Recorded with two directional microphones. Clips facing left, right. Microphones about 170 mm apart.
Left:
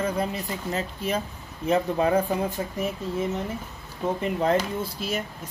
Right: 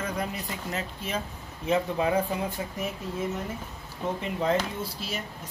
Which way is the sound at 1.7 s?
45° left (ahead or behind).